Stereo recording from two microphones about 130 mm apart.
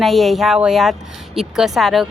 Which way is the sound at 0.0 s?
Centre (ahead or behind).